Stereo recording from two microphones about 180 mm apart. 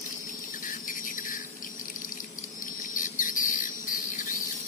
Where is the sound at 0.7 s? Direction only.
50° left (ahead or behind).